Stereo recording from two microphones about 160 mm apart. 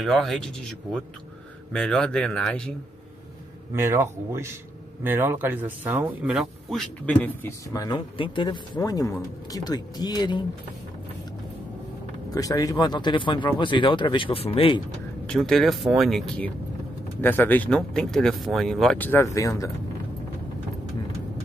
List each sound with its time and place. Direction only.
0.0 s speech: centre (ahead or behind)
3.7 s speech: 15° right (ahead or behind)
6.3 s speech: centre (ahead or behind); by 10.4 s 25° left (ahead or behind)
12.4 s speech: 20° left (ahead or behind)
15.2 s speech: 5° left (ahead or behind); by 19.7 s 20° left (ahead or behind)